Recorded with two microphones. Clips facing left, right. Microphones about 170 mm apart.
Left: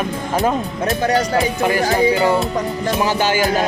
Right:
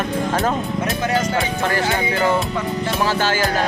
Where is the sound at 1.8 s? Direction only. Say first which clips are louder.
Left 6 dB; 35° left (ahead or behind).